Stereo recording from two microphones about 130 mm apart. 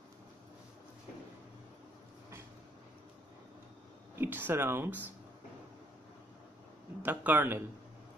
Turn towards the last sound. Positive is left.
turn(degrees=-15)  # may be behind; listen again after turning